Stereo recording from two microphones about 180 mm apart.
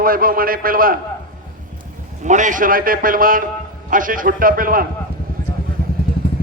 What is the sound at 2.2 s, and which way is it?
Speech, 45° right (ahead or behind).